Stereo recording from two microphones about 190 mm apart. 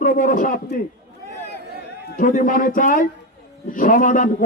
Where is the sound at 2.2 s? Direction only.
45° left (ahead or behind).